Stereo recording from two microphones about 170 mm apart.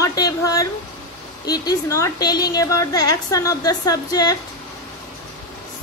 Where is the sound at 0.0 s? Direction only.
20° left (ahead or behind).